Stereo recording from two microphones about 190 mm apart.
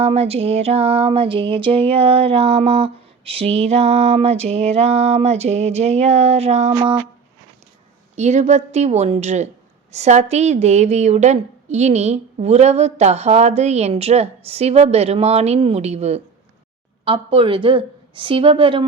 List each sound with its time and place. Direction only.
0.0 s a woman's voice: 30° right (ahead or behind)
8.1 s a woman's voice: 35° right (ahead or behind)